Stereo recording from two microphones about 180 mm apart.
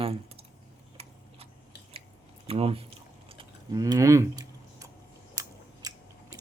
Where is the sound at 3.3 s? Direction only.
25° right (ahead or behind).